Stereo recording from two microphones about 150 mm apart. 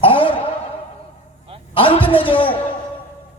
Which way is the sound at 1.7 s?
35° left (ahead or behind).